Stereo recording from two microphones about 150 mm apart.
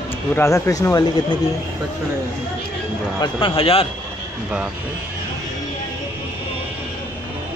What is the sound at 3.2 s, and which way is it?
Speech, 35° left (ahead or behind).